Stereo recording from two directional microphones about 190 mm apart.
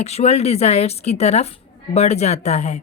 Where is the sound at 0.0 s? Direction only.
35° left (ahead or behind).